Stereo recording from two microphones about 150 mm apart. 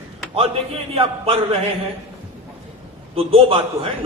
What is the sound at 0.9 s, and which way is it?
Speech, 40° right (ahead or behind).